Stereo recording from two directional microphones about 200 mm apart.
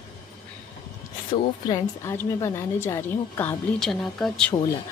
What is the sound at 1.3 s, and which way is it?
A woman's voice, 15° left (ahead or behind).